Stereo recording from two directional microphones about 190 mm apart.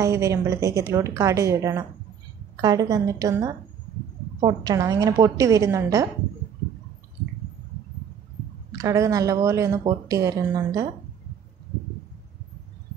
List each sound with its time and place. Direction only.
0.0 s a woman's voice: 15° right (ahead or behind)
8.7 s a woman's voice: 15° right (ahead or behind)